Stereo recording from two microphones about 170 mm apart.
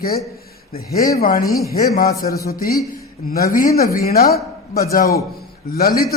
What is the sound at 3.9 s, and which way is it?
Speech, 65° left (ahead or behind).